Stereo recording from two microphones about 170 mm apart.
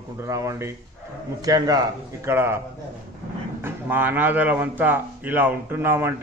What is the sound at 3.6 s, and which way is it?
A man's voice, 10° right (ahead or behind).